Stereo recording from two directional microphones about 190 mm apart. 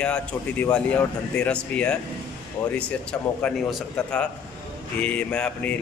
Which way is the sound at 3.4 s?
5° left (ahead or behind).